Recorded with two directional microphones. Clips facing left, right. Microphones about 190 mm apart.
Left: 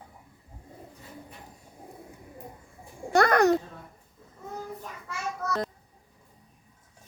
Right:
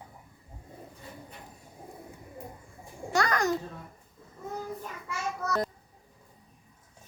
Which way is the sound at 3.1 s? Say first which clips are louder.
Left 7 dB; 60° left (ahead or behind).